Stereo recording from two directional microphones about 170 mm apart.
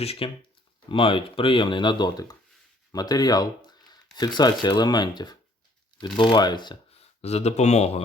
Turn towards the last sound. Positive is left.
turn(degrees=40)  # may be behind; listen again after turning